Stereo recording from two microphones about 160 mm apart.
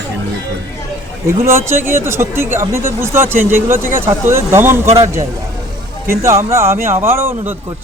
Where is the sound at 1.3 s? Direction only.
15° right (ahead or behind).